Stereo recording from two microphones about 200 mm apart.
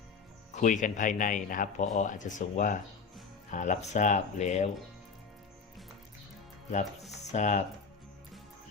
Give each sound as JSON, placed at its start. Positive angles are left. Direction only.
{"t": 0.5, "sound": "speech", "side_deg": 40}
{"t": 7.1, "sound": "speech", "side_deg": 35}